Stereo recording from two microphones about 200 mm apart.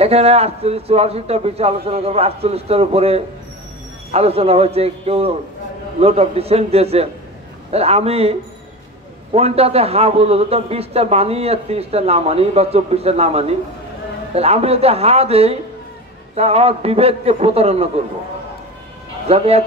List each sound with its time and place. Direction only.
0.0 s a man's voice: 30° right (ahead or behind)
19.2 s a man's voice: 30° right (ahead or behind)